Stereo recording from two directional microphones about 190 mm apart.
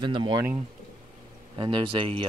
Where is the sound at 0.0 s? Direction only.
25° right (ahead or behind).